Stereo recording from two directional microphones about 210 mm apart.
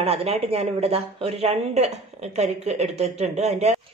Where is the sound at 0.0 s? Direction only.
30° right (ahead or behind).